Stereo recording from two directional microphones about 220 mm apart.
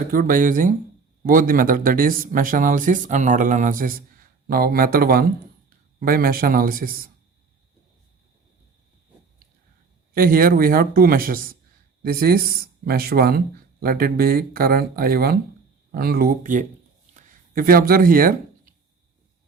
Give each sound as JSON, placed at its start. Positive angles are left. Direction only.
{"t": 0.1, "sound": "speech", "side_deg": -40}
{"t": 10.2, "sound": "speech", "side_deg": -40}
{"t": 17.2, "sound": "a sound", "side_deg": -40}